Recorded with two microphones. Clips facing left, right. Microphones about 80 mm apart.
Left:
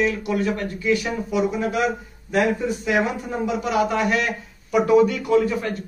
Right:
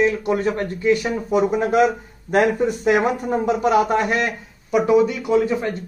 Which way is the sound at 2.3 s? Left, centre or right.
Right.